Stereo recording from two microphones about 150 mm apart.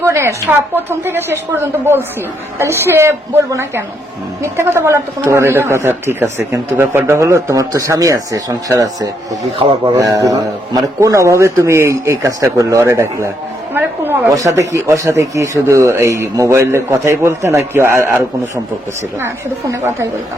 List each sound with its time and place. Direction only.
0.0 s a woman's voice: 20° right (ahead or behind)